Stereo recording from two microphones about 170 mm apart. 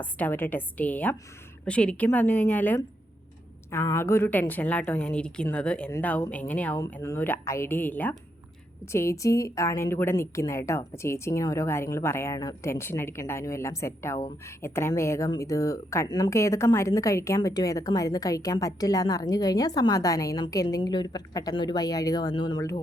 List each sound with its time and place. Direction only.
0.0 s a woman's voice: 10° left (ahead or behind)